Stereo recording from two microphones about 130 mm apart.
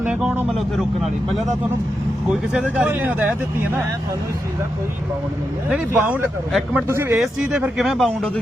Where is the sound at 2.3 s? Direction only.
10° right (ahead or behind).